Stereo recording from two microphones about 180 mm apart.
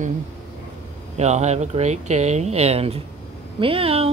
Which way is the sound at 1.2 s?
40° right (ahead or behind).